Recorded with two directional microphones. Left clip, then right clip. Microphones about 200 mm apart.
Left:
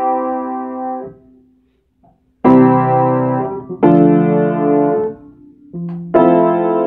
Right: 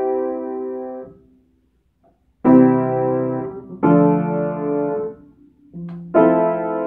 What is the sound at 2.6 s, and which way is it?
Keyboard, 15° left (ahead or behind).